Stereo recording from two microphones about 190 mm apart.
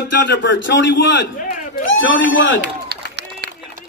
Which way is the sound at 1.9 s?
85° left.